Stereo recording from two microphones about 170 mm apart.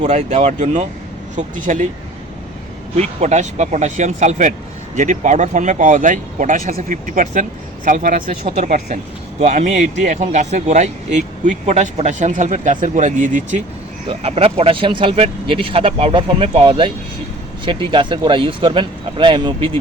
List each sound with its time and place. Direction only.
0.0 s speech: 45° right (ahead or behind)
2.9 s speech: 40° right (ahead or behind)
14.1 s speech: 35° right (ahead or behind)